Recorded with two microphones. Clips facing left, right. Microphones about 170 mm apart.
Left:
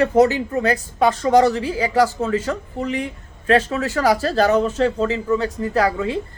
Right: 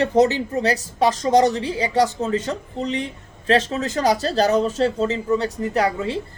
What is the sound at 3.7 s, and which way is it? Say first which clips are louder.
Speech: left 2 dB; 20° right (ahead or behind).